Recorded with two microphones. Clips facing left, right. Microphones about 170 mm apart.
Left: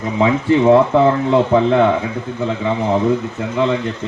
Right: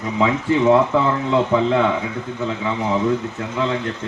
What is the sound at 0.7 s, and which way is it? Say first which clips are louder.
A man's voice: left 5 dB; 60° left (ahead or behind).